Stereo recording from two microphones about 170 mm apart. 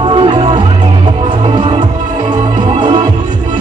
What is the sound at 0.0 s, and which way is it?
Music, 30° right (ahead or behind).